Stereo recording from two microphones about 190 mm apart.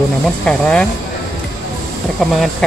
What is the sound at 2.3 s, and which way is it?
Speech, centre (ahead or behind).